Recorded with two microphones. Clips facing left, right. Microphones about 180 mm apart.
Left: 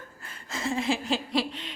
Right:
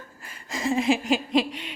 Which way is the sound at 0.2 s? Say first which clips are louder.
Right 4 dB; 15° right (ahead or behind).